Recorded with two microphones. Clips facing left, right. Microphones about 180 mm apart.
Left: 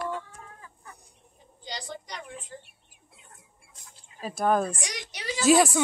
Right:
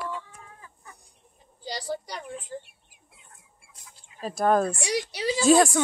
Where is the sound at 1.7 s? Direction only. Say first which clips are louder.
Right 6 dB; 35° right (ahead or behind).